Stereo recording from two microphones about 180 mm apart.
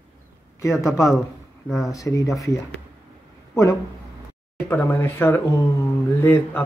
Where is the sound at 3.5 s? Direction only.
15° left (ahead or behind).